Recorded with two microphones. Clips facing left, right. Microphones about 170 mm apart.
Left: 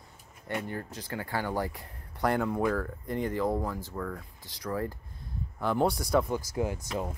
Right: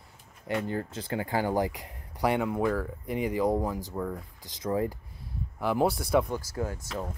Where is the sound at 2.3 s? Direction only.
5° right (ahead or behind); by 5.0 s 20° right (ahead or behind).